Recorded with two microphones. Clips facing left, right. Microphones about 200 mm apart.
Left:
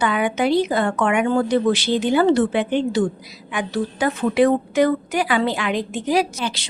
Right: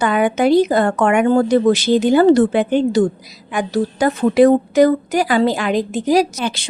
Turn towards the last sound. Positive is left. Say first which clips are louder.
# right 4 dB
turn(degrees=-50)  # may be behind; listen again after turning